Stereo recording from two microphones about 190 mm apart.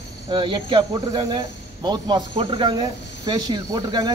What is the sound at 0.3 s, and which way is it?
Speech, 25° right (ahead or behind).